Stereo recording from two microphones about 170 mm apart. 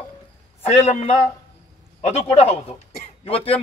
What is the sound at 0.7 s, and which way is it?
A man's voice, 40° left (ahead or behind).